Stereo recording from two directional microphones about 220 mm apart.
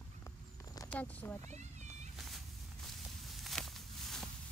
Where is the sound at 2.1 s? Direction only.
Centre (ahead or behind).